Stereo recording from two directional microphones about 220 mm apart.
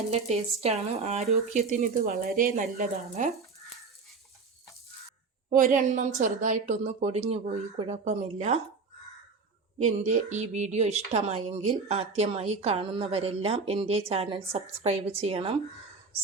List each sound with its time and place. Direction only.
0.6 s a woman's voice: 30° right (ahead or behind)
5.5 s a woman's voice: 40° right (ahead or behind)
9.7 s a woman's voice: 30° right (ahead or behind)